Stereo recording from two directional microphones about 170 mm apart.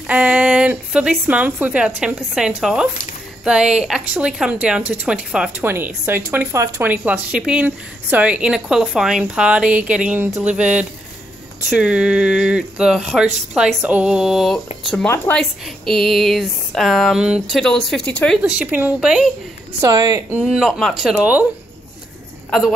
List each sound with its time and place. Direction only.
0.0 s speech: 5° right (ahead or behind)
11.7 s speech: 5° right (ahead or behind)
15.0 s a woman's voice: 10° left (ahead or behind); by 19.3 s 5° right (ahead or behind)
19.8 s a woman's voice: 20° right (ahead or behind)
20.3 s speech: 5° right (ahead or behind)